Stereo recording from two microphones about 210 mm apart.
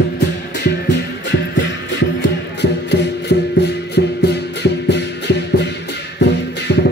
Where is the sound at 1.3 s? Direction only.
55° left (ahead or behind).